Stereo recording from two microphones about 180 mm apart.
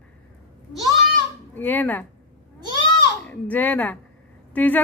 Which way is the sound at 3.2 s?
10° left (ahead or behind).